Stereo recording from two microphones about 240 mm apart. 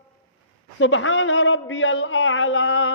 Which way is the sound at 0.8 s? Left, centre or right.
Left.